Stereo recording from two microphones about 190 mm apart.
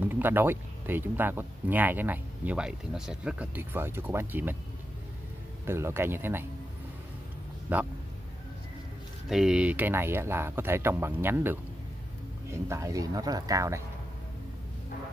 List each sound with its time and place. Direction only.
0.0 s speech: 10° right (ahead or behind)
5.7 s speech: 15° right (ahead or behind)
7.7 s speech: 10° right (ahead or behind)
9.3 s speech: 5° right (ahead or behind)